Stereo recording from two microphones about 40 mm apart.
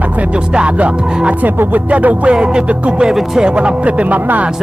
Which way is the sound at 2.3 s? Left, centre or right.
Right.